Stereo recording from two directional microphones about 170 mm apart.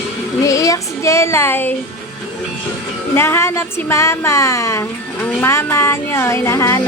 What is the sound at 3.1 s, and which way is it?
Speech, 15° left (ahead or behind).